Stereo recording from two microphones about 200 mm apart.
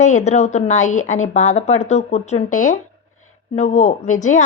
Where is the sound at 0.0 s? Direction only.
35° left (ahead or behind).